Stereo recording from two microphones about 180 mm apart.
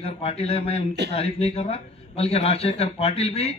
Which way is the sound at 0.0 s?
35° left (ahead or behind).